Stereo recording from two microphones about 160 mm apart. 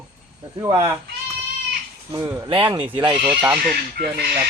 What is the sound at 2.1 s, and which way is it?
Speech, 25° right (ahead or behind).